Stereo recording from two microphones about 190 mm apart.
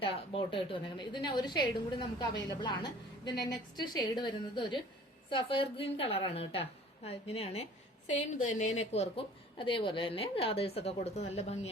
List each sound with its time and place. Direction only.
0.0 s a woman's voice: 25° left (ahead or behind)